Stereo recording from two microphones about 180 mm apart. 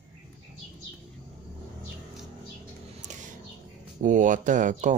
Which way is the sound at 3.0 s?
45° right (ahead or behind).